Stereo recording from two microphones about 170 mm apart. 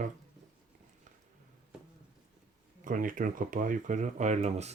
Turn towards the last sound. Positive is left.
turn(degrees=-40)  # may be behind; listen again after turning